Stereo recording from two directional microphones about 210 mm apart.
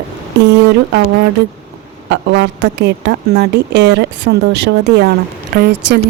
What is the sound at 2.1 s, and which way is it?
A woman's voice, 55° right (ahead or behind).